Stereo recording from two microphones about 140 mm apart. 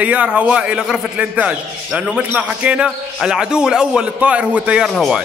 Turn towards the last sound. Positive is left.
turn(degrees=0)  # may be behind; listen again after turning